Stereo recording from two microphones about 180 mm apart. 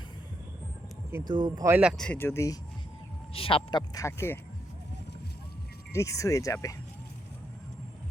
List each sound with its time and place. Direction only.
1.2 s speech: 25° right (ahead or behind); by 2.0 s 5° right (ahead or behind)
2.0 s speech: 10° left (ahead or behind)
3.3 s speech: 30° left (ahead or behind)
5.9 s speech: 15° left (ahead or behind)